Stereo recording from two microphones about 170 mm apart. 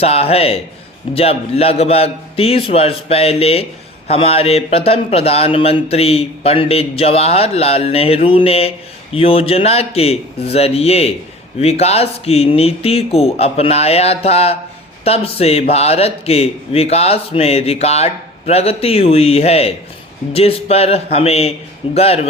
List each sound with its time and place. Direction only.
0.0 s a man's voice: 35° left (ahead or behind)